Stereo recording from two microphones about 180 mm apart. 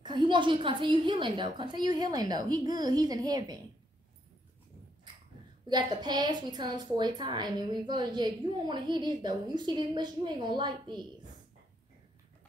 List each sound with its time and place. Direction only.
0.0 s a woman's voice: 25° right (ahead or behind)
5.7 s a woman's voice: 25° right (ahead or behind)